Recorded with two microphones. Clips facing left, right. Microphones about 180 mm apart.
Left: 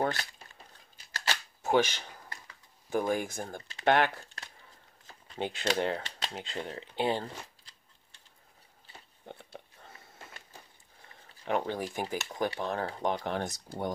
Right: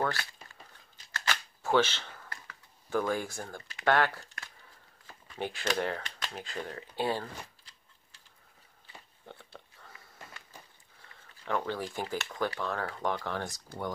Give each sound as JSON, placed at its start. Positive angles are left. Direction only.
{"t": 0.0, "sound": "speech", "side_deg": 20}
{"t": 1.6, "sound": "computer keyboard", "side_deg": 15}
{"t": 5.3, "sound": "speech", "side_deg": 20}
{"t": 9.2, "sound": "a sound", "side_deg": 20}
{"t": 12.4, "sound": "speech", "side_deg": 20}